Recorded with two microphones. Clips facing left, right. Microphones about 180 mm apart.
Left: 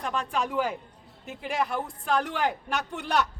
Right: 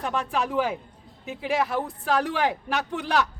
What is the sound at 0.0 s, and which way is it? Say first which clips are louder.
Speech: right 2 dB; centre (ahead or behind).